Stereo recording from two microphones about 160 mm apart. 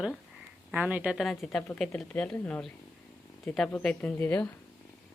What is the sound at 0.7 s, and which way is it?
A child's voice, 10° right (ahead or behind).